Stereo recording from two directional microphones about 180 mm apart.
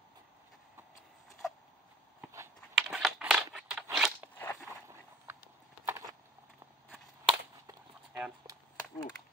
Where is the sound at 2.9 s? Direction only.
Centre (ahead or behind).